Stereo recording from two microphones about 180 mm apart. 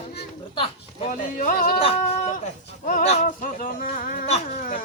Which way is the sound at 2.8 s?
40° left (ahead or behind).